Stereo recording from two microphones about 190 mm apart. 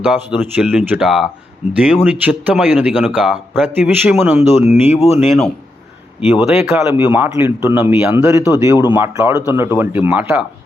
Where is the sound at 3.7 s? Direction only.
10° right (ahead or behind).